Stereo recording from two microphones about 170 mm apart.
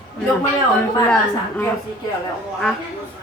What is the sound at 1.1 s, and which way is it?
Speech, 10° left (ahead or behind).